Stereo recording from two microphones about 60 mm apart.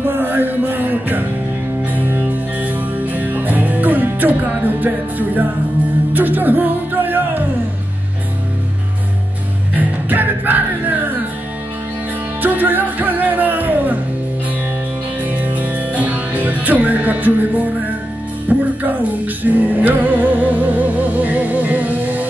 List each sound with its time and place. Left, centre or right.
0.0 s music: right
9.8 s music: right
12.4 s music: right
15.2 s music: right
18.5 s music: right